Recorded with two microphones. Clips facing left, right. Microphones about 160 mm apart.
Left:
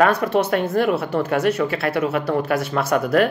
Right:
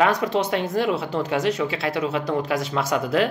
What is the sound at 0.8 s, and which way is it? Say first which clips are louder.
Speech: left 3 dB; 50° left (ahead or behind).